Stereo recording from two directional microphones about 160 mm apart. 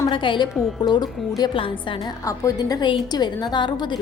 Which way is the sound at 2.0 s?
20° left (ahead or behind).